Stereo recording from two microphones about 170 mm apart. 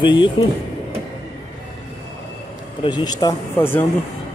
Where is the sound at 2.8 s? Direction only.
25° left (ahead or behind).